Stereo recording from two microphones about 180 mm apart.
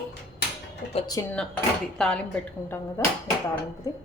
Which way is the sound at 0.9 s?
20° left (ahead or behind).